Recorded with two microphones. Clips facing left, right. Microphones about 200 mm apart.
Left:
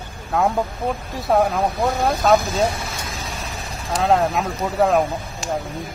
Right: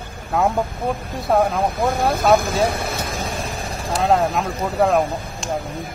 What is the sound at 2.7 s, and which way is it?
Speech, 55° right (ahead or behind).